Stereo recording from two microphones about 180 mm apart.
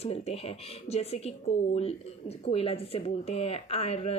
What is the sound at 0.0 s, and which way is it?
Speech, 35° left (ahead or behind).